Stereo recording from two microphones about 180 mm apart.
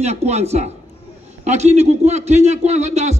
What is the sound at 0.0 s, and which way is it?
A man's voice, 35° right (ahead or behind).